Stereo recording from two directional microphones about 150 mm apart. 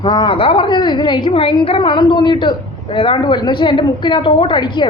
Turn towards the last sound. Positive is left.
turn(degrees=30)  # may be behind; listen again after turning